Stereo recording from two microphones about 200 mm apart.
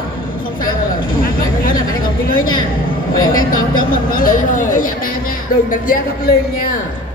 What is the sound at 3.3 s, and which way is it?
A woman's voice, 45° left (ahead or behind).